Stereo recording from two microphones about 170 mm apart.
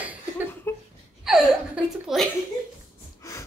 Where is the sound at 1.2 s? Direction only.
5° right (ahead or behind).